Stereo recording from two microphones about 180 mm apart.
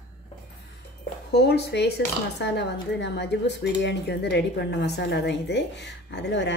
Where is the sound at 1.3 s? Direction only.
65° left (ahead or behind).